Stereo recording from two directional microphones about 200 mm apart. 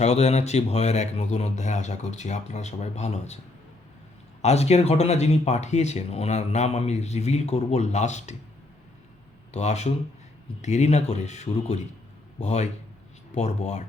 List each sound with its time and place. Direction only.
0.0 s speech: 35° left (ahead or behind)
4.4 s speech: 30° left (ahead or behind)
9.5 s speech: 35° left (ahead or behind)